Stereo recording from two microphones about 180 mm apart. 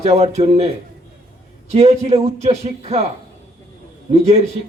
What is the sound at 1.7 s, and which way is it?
A man's voice, 35° right (ahead or behind).